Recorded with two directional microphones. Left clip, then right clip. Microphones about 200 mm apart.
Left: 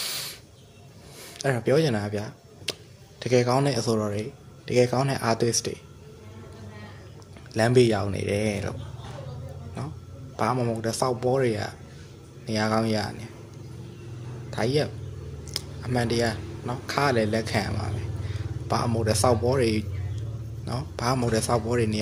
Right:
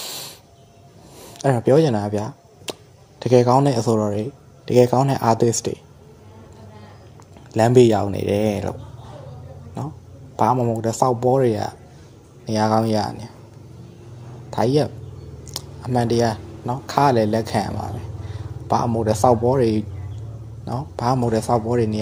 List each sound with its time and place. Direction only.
0.0 s spray: 15° right (ahead or behind)
1.2 s speech: 25° right (ahead or behind)
7.5 s speech: 25° right (ahead or behind)
10.3 s speech: 25° right (ahead or behind)
14.5 s speech: 25° right (ahead or behind)
15.5 s a sound: 25° right (ahead or behind)
15.9 s speech: 25° right (ahead or behind)